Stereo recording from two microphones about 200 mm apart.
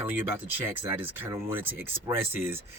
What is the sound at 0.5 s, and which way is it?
Speech, 10° right (ahead or behind).